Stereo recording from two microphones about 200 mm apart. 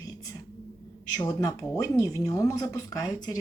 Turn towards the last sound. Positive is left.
turn(degrees=20)  # may be behind; listen again after turning